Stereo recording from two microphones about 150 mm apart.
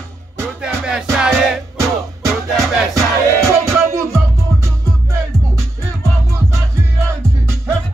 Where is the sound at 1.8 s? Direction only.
20° right (ahead or behind).